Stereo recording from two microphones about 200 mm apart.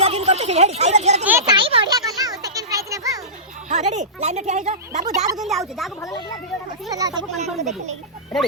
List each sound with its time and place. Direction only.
0.0 s a sound: 30° right (ahead or behind)
1.3 s a sound: 15° right (ahead or behind)
3.7 s speech: 35° right (ahead or behind)
5.0 s speech: 15° right (ahead or behind)
5.4 s a woman's voice: centre (ahead or behind)
7.3 s speech: 35° right (ahead or behind)